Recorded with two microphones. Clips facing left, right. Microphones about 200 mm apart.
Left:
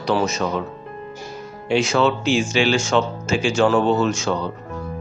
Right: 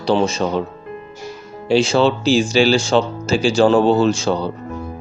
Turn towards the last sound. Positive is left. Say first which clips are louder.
# right 4 dB
turn(degrees=-35)  # may be behind; listen again after turning